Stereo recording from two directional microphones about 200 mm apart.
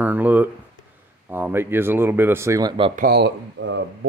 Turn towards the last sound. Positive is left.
turn(degrees=-60)  # may be behind; listen again after turning